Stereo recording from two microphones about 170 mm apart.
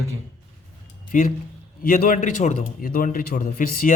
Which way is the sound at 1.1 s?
50° left (ahead or behind).